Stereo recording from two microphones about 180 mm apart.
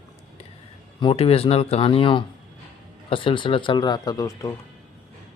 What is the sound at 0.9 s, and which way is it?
Speech, 30° left (ahead or behind).